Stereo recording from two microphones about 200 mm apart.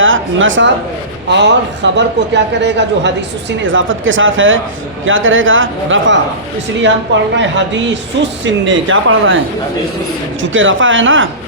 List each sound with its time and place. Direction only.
0.0 s a man's voice: 75° right (ahead or behind)
1.3 s a man's voice: 60° right (ahead or behind)
7.3 s a man's voice: 65° right (ahead or behind)
10.4 s a man's voice: 75° right (ahead or behind)